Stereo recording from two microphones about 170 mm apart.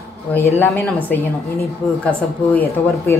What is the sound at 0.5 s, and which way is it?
Speech, 10° left (ahead or behind).